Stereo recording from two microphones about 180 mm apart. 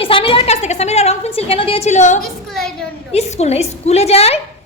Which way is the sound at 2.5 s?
5° left (ahead or behind).